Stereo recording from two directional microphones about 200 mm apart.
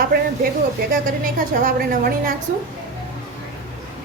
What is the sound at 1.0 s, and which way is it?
A woman's voice, 45° right (ahead or behind).